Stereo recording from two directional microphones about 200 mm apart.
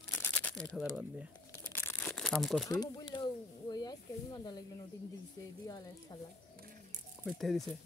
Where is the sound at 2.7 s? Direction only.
20° left (ahead or behind).